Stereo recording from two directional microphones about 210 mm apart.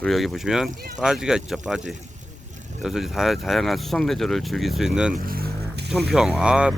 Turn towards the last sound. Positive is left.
turn(degrees=-5)  # may be behind; listen again after turning